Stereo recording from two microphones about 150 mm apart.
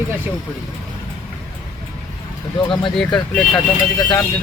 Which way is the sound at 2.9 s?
5° left (ahead or behind).